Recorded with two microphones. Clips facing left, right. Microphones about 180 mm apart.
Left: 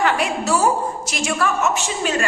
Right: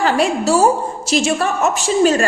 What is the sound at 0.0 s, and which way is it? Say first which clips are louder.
A woman's voice: right 4 dB; 30° right (ahead or behind).